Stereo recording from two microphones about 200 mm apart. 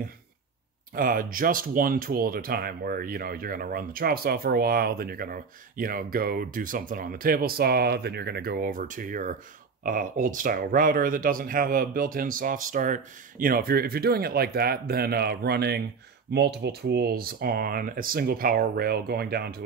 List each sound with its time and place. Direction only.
0.9 s speech: 45° right (ahead or behind)